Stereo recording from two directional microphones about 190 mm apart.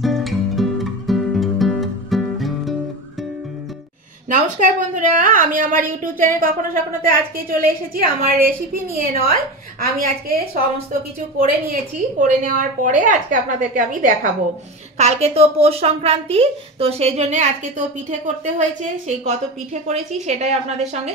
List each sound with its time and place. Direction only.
0.0 s music: centre (ahead or behind)
4.3 s a woman's voice: 40° right (ahead or behind)
10.2 s a woman's voice: 50° right (ahead or behind)